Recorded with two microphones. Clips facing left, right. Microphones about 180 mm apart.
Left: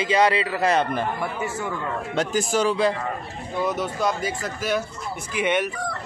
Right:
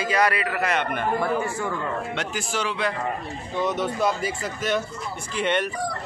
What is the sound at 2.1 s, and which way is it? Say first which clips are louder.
Speech: left 6 dB; 40° left (ahead or behind).